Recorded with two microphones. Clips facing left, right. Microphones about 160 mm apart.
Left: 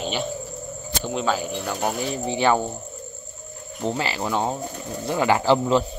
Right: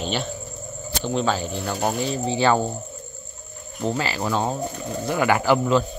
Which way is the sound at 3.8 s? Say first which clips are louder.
Right 1 dB; 20° left (ahead or behind).